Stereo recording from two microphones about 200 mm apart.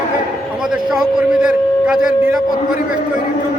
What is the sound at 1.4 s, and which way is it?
A man's voice, 5° right (ahead or behind).